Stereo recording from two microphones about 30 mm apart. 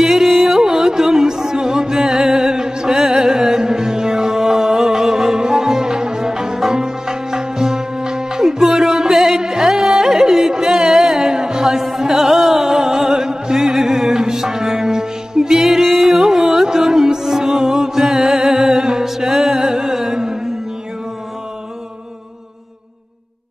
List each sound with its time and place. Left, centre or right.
0.0 s music: centre
0.6 s music: centre
11.1 s music: right
12.2 s music: centre
15.8 s music: centre
16.2 s music: centre